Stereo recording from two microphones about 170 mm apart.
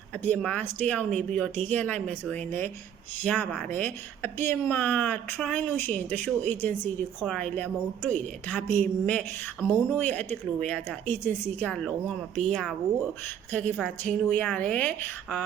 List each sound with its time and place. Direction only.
0.3 s speech: 10° left (ahead or behind)